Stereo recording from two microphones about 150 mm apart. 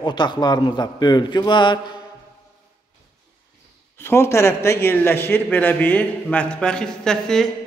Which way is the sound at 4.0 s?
15° left (ahead or behind).